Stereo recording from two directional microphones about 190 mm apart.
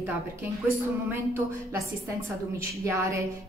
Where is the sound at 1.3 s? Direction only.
15° right (ahead or behind).